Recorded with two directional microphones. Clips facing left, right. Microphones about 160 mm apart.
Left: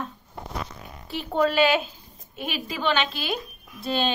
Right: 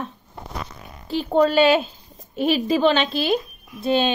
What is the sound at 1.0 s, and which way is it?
Speech, 35° right (ahead or behind).